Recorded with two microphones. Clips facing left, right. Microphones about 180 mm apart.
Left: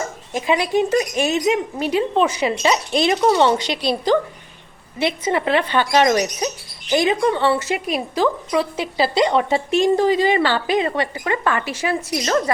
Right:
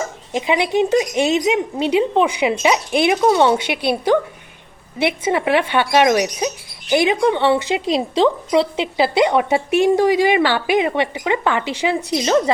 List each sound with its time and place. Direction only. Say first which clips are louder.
0.3 s speech: right 1 dB; 20° right (ahead or behind)
3.7 s a woman's voice: right 2 dB; 60° right (ahead or behind)
4.9 s speech: right 2 dB; 10° right (ahead or behind)